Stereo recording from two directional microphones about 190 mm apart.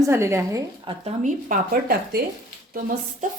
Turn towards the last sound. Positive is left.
turn(degrees=-45)  # may be behind; listen again after turning